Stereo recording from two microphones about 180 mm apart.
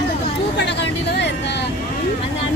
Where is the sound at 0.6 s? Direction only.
75° left (ahead or behind).